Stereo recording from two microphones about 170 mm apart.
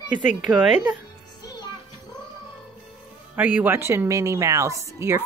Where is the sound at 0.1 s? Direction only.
45° left (ahead or behind).